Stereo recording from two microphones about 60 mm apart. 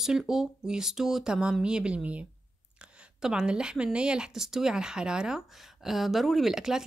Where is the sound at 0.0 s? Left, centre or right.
Centre.